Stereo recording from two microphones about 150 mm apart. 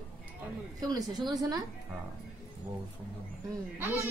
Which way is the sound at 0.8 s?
25° right (ahead or behind).